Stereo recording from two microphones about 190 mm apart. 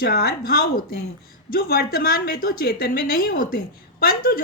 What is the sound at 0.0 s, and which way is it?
A woman's voice, 55° left (ahead or behind).